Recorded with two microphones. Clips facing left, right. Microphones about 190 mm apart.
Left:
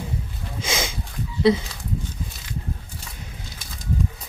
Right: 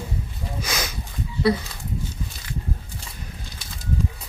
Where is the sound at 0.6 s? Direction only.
25° left (ahead or behind).